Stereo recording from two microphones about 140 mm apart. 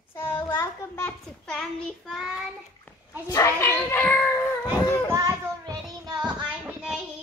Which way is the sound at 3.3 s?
20° left (ahead or behind).